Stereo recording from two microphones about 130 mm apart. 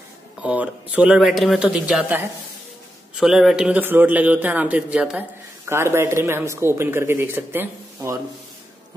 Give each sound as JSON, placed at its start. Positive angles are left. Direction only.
{"t": 0.4, "sound": "a man's voice", "side_deg": -10}
{"t": 3.2, "sound": "a man's voice", "side_deg": -5}
{"t": 5.7, "sound": "speech", "side_deg": -20}